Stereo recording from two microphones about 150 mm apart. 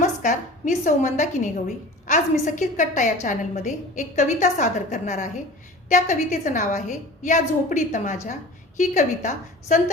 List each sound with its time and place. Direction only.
0.0 s a woman's voice: 60° left (ahead or behind)